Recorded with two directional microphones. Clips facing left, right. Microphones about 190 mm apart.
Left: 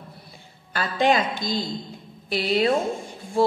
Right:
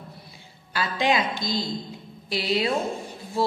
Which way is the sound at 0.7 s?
50° left (ahead or behind).